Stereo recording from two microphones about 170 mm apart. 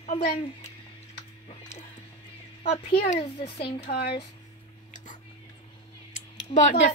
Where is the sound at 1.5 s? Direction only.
40° left (ahead or behind).